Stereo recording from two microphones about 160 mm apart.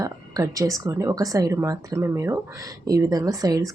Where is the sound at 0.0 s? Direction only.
20° right (ahead or behind).